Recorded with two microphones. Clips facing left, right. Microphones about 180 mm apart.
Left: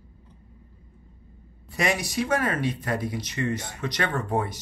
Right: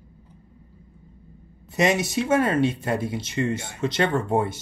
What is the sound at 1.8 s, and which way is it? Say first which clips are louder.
Speech: right 4 dB; 20° right (ahead or behind).